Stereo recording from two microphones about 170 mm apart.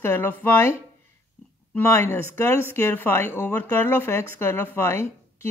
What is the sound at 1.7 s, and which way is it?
A woman's voice, 15° left (ahead or behind).